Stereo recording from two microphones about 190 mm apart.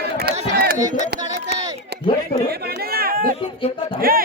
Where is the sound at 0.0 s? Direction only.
55° right (ahead or behind).